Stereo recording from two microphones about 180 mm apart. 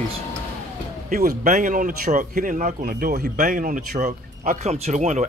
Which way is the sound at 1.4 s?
45° right (ahead or behind).